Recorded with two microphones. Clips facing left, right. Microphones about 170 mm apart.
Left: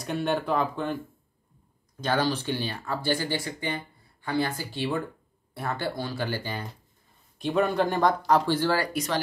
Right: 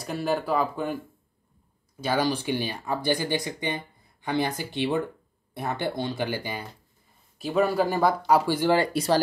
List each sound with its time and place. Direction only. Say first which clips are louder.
0.0 s speech: even; centre (ahead or behind)
2.0 s speech: right 1 dB; 10° right (ahead or behind)
7.3 s speech: right 1 dB; 5° right (ahead or behind); by 9.2 s 30° right (ahead or behind)